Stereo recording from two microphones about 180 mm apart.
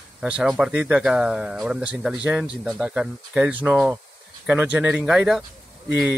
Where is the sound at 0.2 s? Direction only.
5° right (ahead or behind).